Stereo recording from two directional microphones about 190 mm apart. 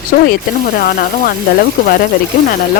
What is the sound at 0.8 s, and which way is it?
Speech, 55° left (ahead or behind).